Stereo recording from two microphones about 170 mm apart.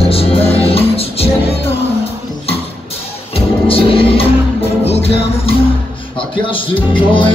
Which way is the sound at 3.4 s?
35° left (ahead or behind).